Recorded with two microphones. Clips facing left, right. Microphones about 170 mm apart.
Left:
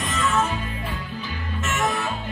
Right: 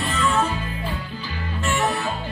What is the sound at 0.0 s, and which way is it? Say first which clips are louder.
Music: right 1 dB; 30° right (ahead or behind).